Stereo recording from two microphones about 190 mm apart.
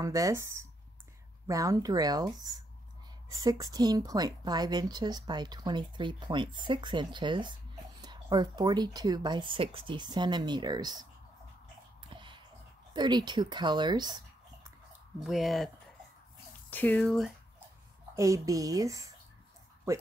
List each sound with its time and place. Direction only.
0.0 s a woman's voice: 15° right (ahead or behind)
12.0 s music: 25° right (ahead or behind)
12.9 s speech: 20° right (ahead or behind)
14.9 s speech: centre (ahead or behind)
16.7 s speech: 10° left (ahead or behind)
18.1 s a woman's voice: 15° right (ahead or behind)